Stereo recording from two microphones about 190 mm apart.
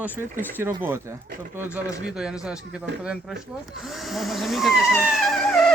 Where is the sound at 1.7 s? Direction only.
15° left (ahead or behind).